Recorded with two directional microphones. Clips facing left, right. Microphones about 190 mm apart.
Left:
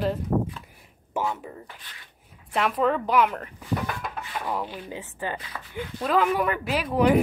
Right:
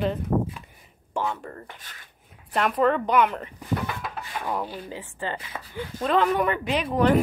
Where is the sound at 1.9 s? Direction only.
45° right (ahead or behind).